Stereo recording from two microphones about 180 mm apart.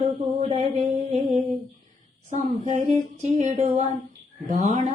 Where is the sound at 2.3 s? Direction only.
40° right (ahead or behind).